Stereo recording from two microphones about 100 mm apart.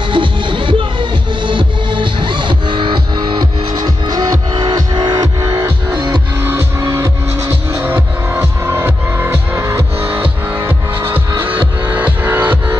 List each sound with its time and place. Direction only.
0.1 s music: 55° right (ahead or behind); by 5.9 s 35° right (ahead or behind)
5.9 s music: 50° right (ahead or behind)
6.4 s music: 25° right (ahead or behind)
11.3 s music: 20° right (ahead or behind)